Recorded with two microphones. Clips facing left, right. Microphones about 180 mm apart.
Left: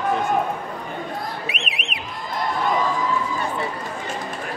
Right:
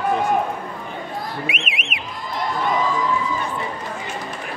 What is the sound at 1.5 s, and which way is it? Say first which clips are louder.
Alarm: right 1 dB; 35° left (ahead or behind).